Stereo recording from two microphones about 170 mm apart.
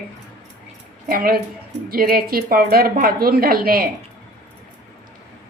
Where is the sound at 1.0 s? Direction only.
60° right (ahead or behind).